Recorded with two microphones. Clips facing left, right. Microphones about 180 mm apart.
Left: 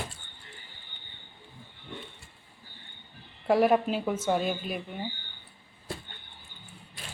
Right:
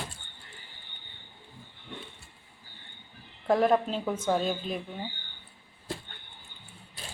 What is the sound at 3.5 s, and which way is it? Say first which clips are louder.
A woman's voice: left 1 dB; 10° left (ahead or behind).